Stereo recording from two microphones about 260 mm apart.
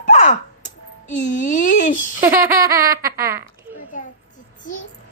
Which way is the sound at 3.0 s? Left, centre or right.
Centre.